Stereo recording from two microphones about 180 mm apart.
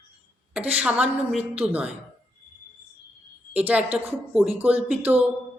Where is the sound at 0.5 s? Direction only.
10° right (ahead or behind).